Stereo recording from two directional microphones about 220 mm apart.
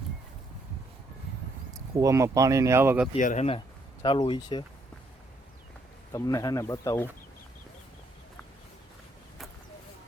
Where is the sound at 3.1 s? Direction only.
35° left (ahead or behind).